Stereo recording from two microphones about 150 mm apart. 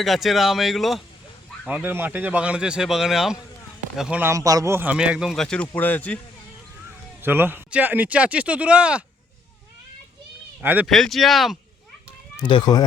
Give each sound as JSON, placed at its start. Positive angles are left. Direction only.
{"t": 0.0, "sound": "speech", "side_deg": 0}
{"t": 1.6, "sound": "speech", "side_deg": -10}
{"t": 7.2, "sound": "speech", "side_deg": -15}
{"t": 10.6, "sound": "speech", "side_deg": -10}
{"t": 10.8, "sound": "speech", "side_deg": 0}
{"t": 12.5, "sound": "speech", "side_deg": 30}